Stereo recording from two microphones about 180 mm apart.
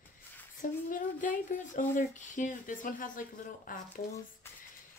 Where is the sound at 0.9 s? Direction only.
45° left (ahead or behind).